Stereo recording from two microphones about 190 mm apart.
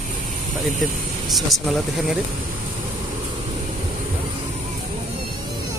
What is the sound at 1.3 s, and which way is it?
Speech, centre (ahead or behind).